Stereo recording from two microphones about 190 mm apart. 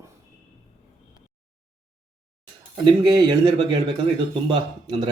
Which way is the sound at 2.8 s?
25° right (ahead or behind).